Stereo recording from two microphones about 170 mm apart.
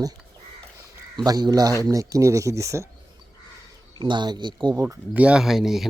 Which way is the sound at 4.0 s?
25° right (ahead or behind).